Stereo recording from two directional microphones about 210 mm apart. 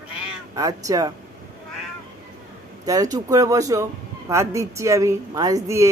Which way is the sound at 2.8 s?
15° right (ahead or behind).